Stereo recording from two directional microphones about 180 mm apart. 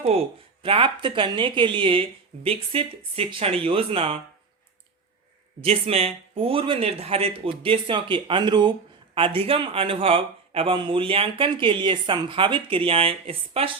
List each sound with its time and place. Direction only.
0.0 s speech: 30° right (ahead or behind)
5.5 s speech: 30° right (ahead or behind)